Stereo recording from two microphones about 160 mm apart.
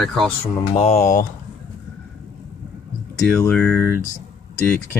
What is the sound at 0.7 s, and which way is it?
Speech, 40° left (ahead or behind).